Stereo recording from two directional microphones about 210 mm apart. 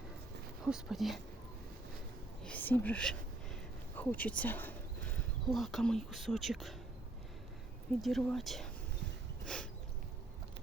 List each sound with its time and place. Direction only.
0.6 s speech: centre (ahead or behind)
2.4 s a sound: 5° left (ahead or behind)
5.1 s speech: centre (ahead or behind)
8.0 s speech: centre (ahead or behind)